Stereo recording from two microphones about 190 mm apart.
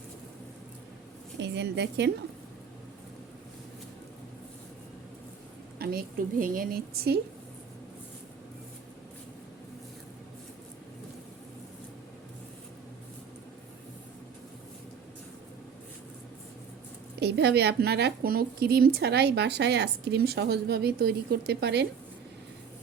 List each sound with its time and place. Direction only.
1.4 s a woman's voice: 65° right (ahead or behind)
5.8 s a woman's voice: 50° right (ahead or behind)
17.2 s a woman's voice: 60° right (ahead or behind)